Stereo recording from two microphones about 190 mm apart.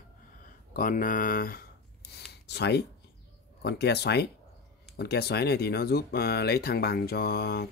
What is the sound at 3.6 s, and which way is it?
Speech, 60° left (ahead or behind).